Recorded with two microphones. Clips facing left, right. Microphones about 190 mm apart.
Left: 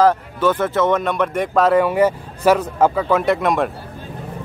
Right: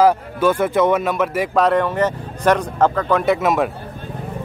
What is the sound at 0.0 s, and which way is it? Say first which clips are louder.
Speech: right 1 dB; 10° right (ahead or behind).